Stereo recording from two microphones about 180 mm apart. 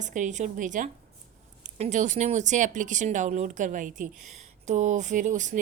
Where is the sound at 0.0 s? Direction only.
45° right (ahead or behind).